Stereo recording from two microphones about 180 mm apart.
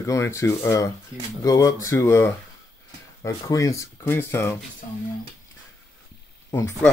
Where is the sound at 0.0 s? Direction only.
15° left (ahead or behind).